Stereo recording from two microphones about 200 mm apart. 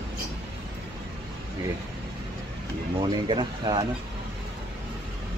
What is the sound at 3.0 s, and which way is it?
Speech, 20° right (ahead or behind).